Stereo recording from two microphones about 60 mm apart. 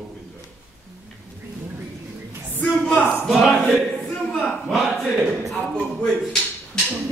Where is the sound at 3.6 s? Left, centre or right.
Centre.